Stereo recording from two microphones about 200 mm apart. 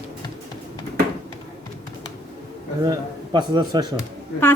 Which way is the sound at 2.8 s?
20° right (ahead or behind).